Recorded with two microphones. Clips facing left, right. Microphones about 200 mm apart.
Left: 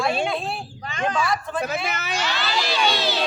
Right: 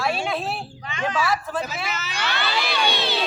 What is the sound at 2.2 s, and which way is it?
Speech, 60° right (ahead or behind).